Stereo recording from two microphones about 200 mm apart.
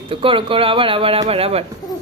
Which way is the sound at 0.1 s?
25° right (ahead or behind).